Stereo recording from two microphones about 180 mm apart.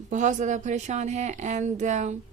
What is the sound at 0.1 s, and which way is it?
A woman's voice, 45° right (ahead or behind).